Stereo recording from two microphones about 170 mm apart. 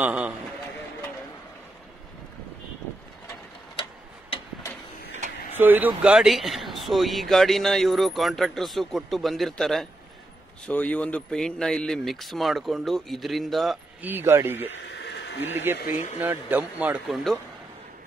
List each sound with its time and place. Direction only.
0.0 s speech: 5° right (ahead or behind)
5.5 s speech: 10° right (ahead or behind)
14.0 s speech: 10° right (ahead or behind)
14.8 s a sound: 90° left
15.5 s speech: 15° right (ahead or behind)